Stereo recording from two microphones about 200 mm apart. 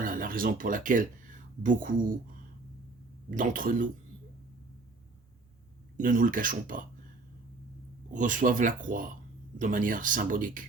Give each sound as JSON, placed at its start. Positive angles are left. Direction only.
{"t": 0.0, "sound": "speech", "side_deg": -45}
{"t": 3.2, "sound": "speech", "side_deg": -40}
{"t": 6.0, "sound": "speech", "side_deg": -40}
{"t": 8.1, "sound": "speech", "side_deg": -40}